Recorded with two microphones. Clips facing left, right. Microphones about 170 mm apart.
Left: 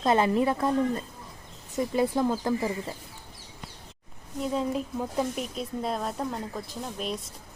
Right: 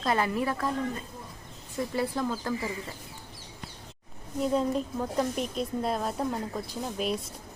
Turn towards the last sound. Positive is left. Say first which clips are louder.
# right 3 dB
turn(degrees=0)  # may be behind; listen again after turning